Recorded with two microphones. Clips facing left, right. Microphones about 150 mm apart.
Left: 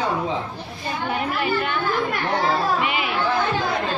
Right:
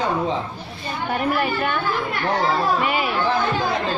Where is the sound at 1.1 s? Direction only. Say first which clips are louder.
Right 2 dB; 45° right (ahead or behind).